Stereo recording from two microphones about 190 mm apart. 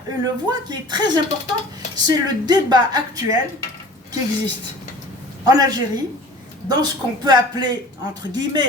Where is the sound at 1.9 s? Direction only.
20° right (ahead or behind).